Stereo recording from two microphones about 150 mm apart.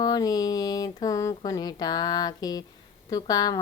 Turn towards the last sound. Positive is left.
turn(degrees=25)  # may be behind; listen again after turning